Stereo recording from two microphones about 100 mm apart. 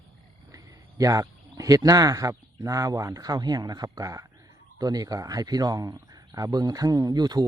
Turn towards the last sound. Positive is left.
turn(degrees=-45)  # may be behind; listen again after turning